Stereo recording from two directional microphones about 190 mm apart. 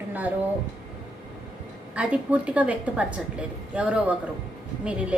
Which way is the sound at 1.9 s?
5° right (ahead or behind).